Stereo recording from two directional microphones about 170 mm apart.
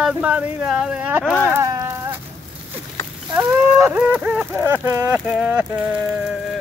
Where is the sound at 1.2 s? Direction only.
10° left (ahead or behind).